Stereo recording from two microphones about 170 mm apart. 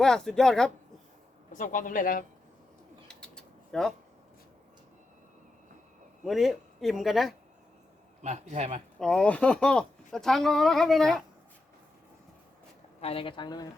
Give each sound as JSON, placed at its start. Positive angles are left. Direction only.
{"t": 0.0, "sound": "speech", "side_deg": 5}
{"t": 1.5, "sound": "a man's voice", "side_deg": 50}
{"t": 3.1, "sound": "mechanisms", "side_deg": 5}
{"t": 6.2, "sound": "speech", "side_deg": 0}
{"t": 8.2, "sound": "a man's voice", "side_deg": -45}
{"t": 9.0, "sound": "speech", "side_deg": 5}
{"t": 13.0, "sound": "a woman's voice", "side_deg": 35}